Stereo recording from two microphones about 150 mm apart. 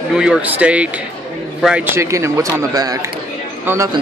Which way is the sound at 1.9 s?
20° right (ahead or behind).